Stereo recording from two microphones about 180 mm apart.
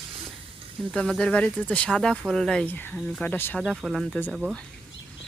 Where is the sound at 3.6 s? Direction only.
Centre (ahead or behind).